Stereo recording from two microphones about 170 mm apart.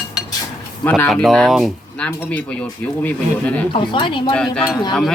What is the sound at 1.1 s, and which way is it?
Speech, centre (ahead or behind).